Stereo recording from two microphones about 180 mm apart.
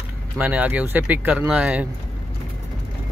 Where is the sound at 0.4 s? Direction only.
10° right (ahead or behind).